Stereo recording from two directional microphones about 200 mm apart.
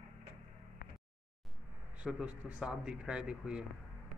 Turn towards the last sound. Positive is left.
turn(degrees=-5)  # may be behind; listen again after turning